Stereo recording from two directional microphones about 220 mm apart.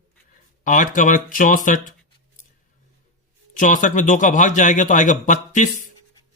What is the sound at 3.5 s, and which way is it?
A man's voice, 35° left (ahead or behind).